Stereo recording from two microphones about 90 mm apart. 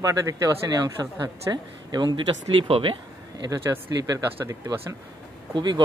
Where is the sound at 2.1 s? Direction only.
75° right (ahead or behind).